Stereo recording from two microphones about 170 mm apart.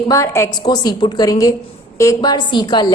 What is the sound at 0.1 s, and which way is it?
A woman's voice, 15° left (ahead or behind).